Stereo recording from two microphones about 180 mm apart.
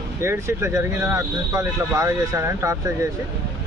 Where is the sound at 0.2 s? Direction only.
15° right (ahead or behind).